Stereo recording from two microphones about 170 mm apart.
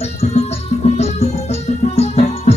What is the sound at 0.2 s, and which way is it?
Music, 40° left (ahead or behind).